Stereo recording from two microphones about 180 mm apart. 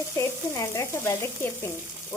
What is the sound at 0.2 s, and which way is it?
Speech, 15° left (ahead or behind).